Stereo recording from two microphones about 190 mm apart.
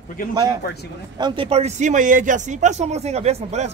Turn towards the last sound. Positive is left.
turn(degrees=-35)  # may be behind; listen again after turning